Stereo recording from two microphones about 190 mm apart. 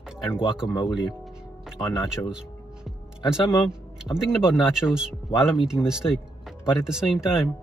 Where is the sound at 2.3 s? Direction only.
5° right (ahead or behind).